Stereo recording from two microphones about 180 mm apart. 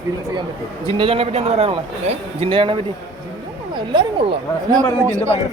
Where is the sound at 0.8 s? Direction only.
30° right (ahead or behind).